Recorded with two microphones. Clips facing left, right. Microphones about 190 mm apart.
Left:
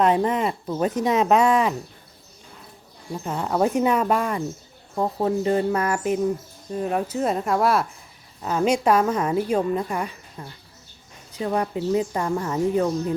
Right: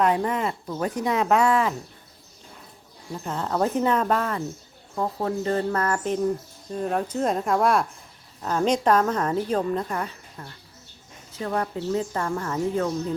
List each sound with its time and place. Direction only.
0.0 s speech: 20° left (ahead or behind)
3.2 s a woman's voice: 10° left (ahead or behind)